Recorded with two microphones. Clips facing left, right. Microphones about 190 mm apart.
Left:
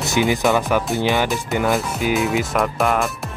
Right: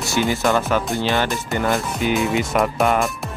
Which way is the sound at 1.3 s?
Centre (ahead or behind).